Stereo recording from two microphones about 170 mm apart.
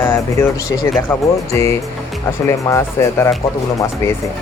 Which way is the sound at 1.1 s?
15° left (ahead or behind).